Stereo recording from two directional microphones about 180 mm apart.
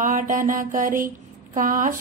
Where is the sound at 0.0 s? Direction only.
45° right (ahead or behind).